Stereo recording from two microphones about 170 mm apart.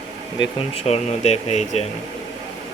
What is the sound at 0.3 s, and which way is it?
Speech, 35° left (ahead or behind).